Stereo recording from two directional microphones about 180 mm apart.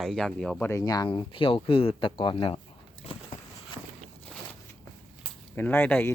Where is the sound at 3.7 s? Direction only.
30° left (ahead or behind).